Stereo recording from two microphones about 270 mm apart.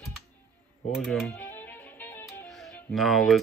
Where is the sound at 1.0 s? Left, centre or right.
Centre.